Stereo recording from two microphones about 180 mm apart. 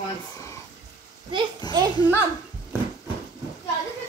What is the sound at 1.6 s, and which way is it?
Children playing, 25° left (ahead or behind).